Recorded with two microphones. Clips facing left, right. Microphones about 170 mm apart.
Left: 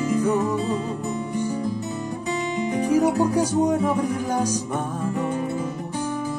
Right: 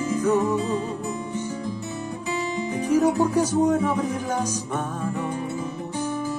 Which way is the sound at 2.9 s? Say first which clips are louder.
Even; 15° left (ahead or behind).